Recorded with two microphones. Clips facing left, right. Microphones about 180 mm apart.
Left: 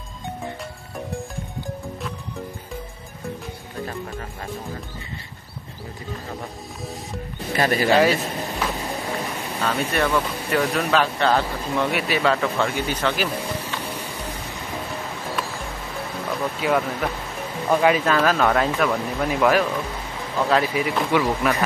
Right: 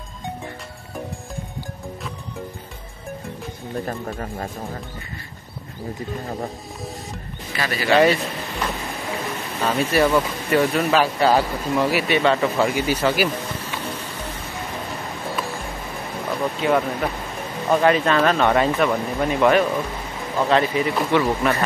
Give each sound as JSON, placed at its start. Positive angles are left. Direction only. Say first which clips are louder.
{"t": 3.8, "sound": "speech", "louder": "left 1 dB", "side_deg": -40}
{"t": 7.5, "sound": "speech", "louder": "left 1 dB", "side_deg": 45}
{"t": 8.0, "sound": "speech", "louder": "right 2 dB", "side_deg": 0}
{"t": 9.6, "sound": "speech", "louder": "right 4 dB", "side_deg": -10}
{"t": 16.3, "sound": "speech", "louder": "right 2 dB", "side_deg": 0}